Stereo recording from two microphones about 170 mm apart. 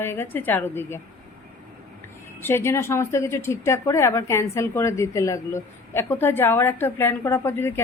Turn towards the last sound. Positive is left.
turn(degrees=15)  # may be behind; listen again after turning